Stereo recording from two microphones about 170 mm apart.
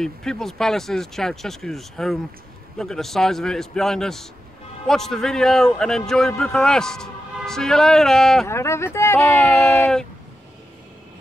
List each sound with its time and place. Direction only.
0.0 s a man's voice: 5° left (ahead or behind)
8.5 s speech: 15° left (ahead or behind)